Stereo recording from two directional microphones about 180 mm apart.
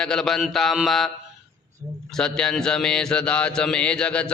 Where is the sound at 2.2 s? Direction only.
5° left (ahead or behind).